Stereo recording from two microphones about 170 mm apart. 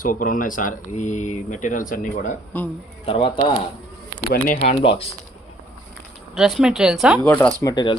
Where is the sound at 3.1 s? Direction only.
30° left (ahead or behind).